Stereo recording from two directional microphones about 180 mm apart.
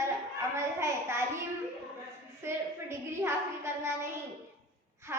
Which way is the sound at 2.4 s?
15° right (ahead or behind).